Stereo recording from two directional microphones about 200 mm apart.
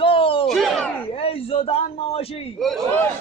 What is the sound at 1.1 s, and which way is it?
A man's voice, 30° left (ahead or behind).